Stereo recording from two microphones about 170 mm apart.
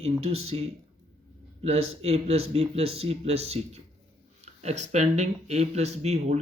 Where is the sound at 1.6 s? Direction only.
40° right (ahead or behind).